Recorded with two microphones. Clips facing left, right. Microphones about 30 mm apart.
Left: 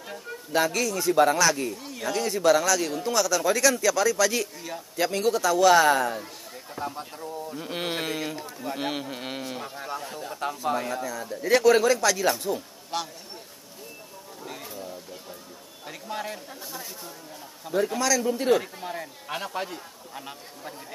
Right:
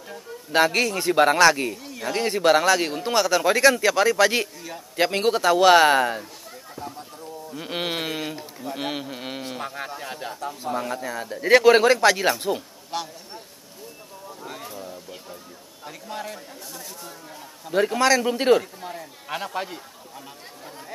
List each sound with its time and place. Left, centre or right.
0.5 s speech: right
6.8 s speech: left
7.5 s speech: right; by 9.4 s centre
10.4 s speech: left
10.9 s speech: right
12.9 s speech: centre
14.4 s a sound: centre
15.8 s speech: centre
17.9 s speech: right
18.6 s speech: centre
19.2 s a man's voice: centre
20.2 s speech: left